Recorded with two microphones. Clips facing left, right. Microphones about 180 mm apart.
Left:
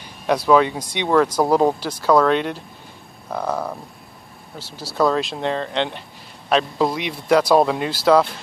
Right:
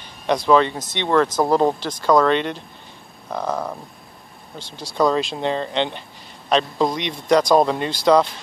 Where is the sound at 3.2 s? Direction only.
5° left (ahead or behind).